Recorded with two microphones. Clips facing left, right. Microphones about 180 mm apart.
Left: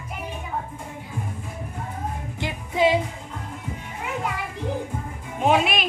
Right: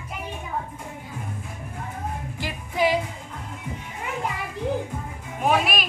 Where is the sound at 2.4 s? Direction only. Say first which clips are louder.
Left 3 dB; 25° left (ahead or behind).